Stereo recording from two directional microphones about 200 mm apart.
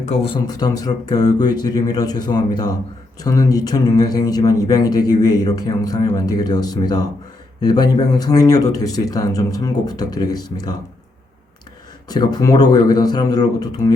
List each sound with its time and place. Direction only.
0.0 s speech: 25° left (ahead or behind)
12.0 s speech: 20° left (ahead or behind)